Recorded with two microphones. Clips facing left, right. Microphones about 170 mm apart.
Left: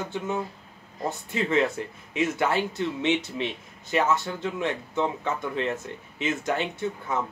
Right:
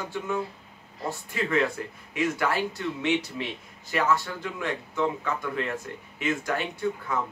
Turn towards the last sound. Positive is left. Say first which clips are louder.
# right 1 dB
turn(degrees=20)  # may be behind; listen again after turning